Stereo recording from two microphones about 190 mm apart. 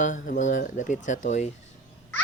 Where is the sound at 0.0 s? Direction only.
40° left (ahead or behind).